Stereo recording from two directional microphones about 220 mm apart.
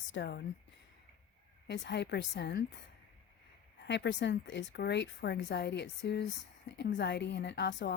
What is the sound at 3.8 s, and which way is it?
Speech, 50° left (ahead or behind).